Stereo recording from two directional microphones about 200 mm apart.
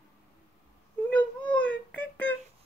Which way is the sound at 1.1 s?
5° left (ahead or behind).